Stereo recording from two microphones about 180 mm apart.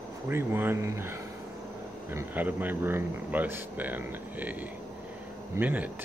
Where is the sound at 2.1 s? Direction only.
10° right (ahead or behind).